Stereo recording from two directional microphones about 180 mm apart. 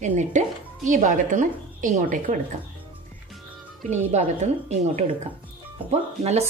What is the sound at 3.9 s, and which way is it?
Speech, 40° right (ahead or behind).